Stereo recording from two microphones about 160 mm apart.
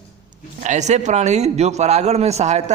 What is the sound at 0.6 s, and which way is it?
Speech, 50° right (ahead or behind).